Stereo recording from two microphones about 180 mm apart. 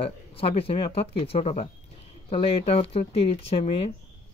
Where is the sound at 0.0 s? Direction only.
30° left (ahead or behind).